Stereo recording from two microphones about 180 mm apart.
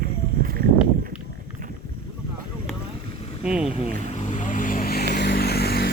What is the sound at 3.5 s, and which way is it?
Boat, 5° right (ahead or behind).